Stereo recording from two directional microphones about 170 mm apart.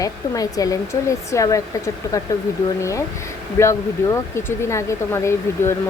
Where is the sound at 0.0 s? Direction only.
20° left (ahead or behind).